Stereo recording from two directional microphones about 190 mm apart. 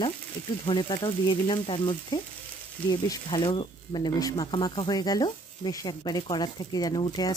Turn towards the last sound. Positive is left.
turn(degrees=20)  # may be behind; listen again after turning